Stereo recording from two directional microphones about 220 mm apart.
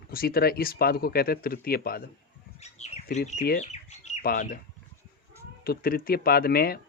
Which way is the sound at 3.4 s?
35° left (ahead or behind).